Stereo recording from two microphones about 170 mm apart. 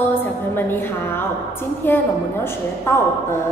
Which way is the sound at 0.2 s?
10° left (ahead or behind).